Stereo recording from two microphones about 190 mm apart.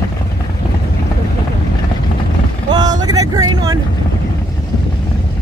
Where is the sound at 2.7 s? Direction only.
20° right (ahead or behind).